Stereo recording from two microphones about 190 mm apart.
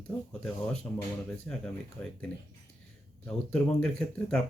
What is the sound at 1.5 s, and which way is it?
Speech, 10° left (ahead or behind).